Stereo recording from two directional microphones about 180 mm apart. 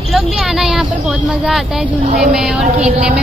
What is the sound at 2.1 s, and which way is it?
A woman's voice, 5° right (ahead or behind).